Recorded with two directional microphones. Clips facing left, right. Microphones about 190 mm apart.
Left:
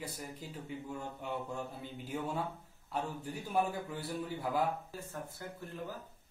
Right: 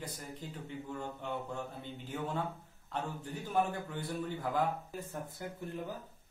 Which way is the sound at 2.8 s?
10° left (ahead or behind).